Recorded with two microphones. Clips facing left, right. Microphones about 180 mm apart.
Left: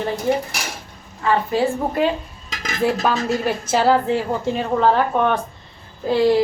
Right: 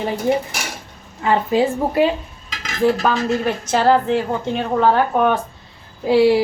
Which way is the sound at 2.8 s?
5° left (ahead or behind).